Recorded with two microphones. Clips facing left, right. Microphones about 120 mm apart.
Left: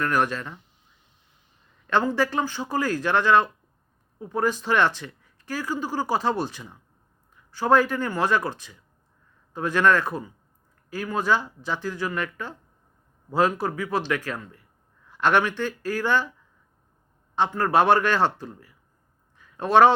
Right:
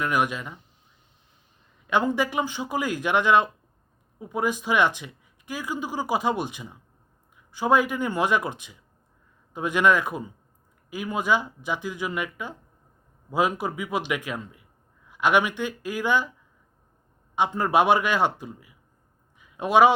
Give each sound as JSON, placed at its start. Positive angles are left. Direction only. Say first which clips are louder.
{"t": 0.0, "sound": "speech", "louder": "left 1 dB", "side_deg": -15}
{"t": 1.9, "sound": "speech", "louder": "left 1 dB", "side_deg": -15}
{"t": 17.3, "sound": "speech", "louder": "left 1 dB", "side_deg": -15}
{"t": 19.4, "sound": "a sound", "louder": "left 1 dB", "side_deg": -15}